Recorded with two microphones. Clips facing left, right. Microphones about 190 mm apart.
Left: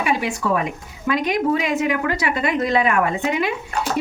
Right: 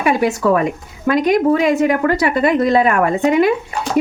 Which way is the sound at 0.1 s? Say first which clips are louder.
Right 8 dB; 50° right (ahead or behind).